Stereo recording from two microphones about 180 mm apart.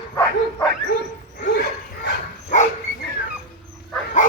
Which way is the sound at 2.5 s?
40° left (ahead or behind).